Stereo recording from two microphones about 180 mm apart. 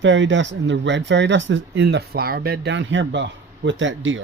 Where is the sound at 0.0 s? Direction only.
90° right.